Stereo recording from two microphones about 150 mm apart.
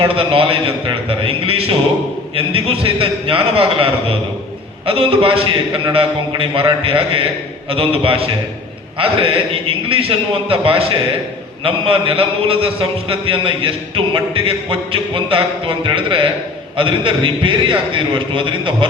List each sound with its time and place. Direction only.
0.0 s a man's voice: 40° right (ahead or behind)